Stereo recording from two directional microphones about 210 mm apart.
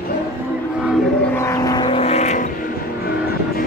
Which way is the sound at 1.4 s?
15° left (ahead or behind).